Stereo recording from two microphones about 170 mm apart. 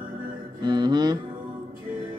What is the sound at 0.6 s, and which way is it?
Speech, 25° right (ahead or behind).